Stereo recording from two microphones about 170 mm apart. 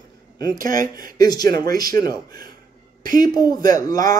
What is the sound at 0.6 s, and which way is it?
Speech, 55° right (ahead or behind).